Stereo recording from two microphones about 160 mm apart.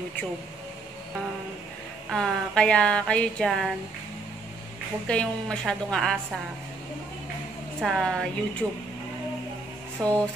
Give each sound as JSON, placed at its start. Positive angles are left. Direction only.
{"t": 2.0, "sound": "speech", "side_deg": 5}
{"t": 5.0, "sound": "speech", "side_deg": 5}
{"t": 7.8, "sound": "speech", "side_deg": 5}
{"t": 8.6, "sound": "speech", "side_deg": -15}
{"t": 10.0, "sound": "speech", "side_deg": 5}